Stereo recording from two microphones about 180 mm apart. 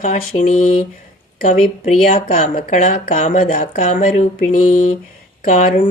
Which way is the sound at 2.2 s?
50° left (ahead or behind).